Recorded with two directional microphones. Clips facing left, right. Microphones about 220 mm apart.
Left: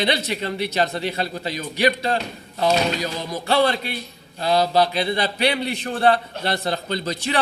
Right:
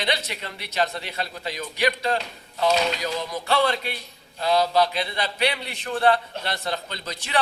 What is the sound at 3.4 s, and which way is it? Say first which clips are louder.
A man's voice: left 4 dB; 35° left (ahead or behind).